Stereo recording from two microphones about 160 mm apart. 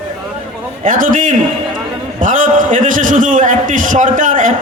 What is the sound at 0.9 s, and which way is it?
A man's voice, 55° right (ahead or behind).